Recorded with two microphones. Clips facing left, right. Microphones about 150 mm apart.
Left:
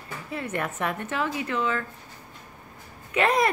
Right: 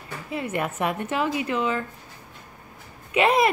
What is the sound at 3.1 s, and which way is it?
Speech, 15° right (ahead or behind).